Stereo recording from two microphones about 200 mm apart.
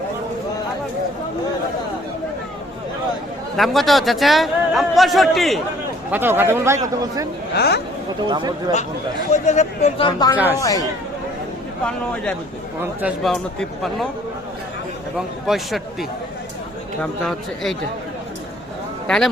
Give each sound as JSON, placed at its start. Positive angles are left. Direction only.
{"t": 3.6, "sound": "a man's voice", "side_deg": 0}
{"t": 6.1, "sound": "speech", "side_deg": -10}
{"t": 7.5, "sound": "speech", "side_deg": 55}
{"t": 8.3, "sound": "speech", "side_deg": -20}
{"t": 9.3, "sound": "speech", "side_deg": 35}
{"t": 10.1, "sound": "speech", "side_deg": 20}
{"t": 10.3, "sound": "speech", "side_deg": -10}
{"t": 10.6, "sound": "speech", "side_deg": 15}
{"t": 11.9, "sound": "a man's voice", "side_deg": 5}
{"t": 12.8, "sound": "a man's voice", "side_deg": -5}
{"t": 15.4, "sound": "a man's voice", "side_deg": 0}
{"t": 19.0, "sound": "speech", "side_deg": 5}